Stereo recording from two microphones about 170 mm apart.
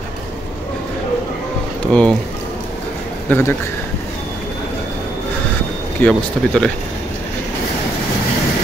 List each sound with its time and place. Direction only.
1.9 s speech: 5° left (ahead or behind)
3.3 s speech: 10° left (ahead or behind)
5.9 s speech: 5° left (ahead or behind)